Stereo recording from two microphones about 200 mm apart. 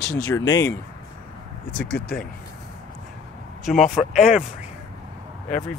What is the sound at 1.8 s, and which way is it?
Speech, 55° left (ahead or behind).